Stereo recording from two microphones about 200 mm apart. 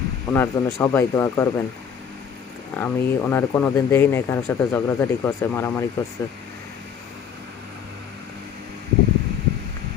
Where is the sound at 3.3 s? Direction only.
10° left (ahead or behind).